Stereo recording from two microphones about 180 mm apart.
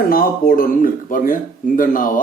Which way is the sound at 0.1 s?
55° left (ahead or behind).